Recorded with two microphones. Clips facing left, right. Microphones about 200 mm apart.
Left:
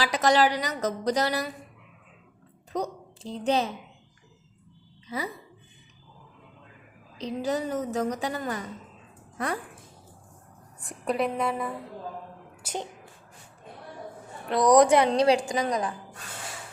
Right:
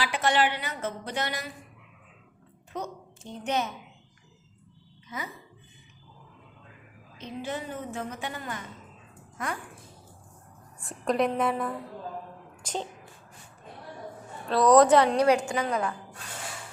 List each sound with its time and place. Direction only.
0.0 s speech: 40° left (ahead or behind)
2.7 s a woman's voice: 35° left (ahead or behind)
5.0 s a woman's voice: 35° left (ahead or behind)
7.2 s speech: 35° left (ahead or behind)
10.8 s a woman's voice: 15° left (ahead or behind)
12.6 s a woman's voice: 10° left (ahead or behind)
14.4 s a woman's voice: 15° left (ahead or behind)
15.1 s speech: 30° left (ahead or behind)
15.5 s a woman's voice: 15° left (ahead or behind)